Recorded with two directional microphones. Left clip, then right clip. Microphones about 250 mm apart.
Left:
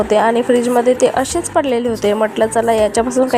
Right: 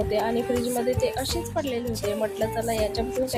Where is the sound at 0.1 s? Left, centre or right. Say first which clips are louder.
Left 12 dB; left.